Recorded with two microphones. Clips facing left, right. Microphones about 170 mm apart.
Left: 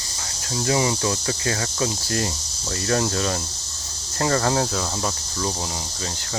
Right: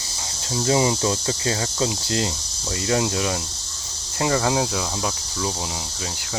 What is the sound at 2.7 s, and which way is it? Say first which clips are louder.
Speech: right 1 dB; 15° right (ahead or behind).